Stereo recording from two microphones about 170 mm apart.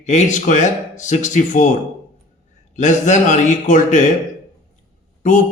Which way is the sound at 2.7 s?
45° left (ahead or behind).